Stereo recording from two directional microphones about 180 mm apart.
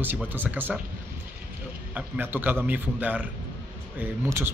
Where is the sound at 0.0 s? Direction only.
10° right (ahead or behind).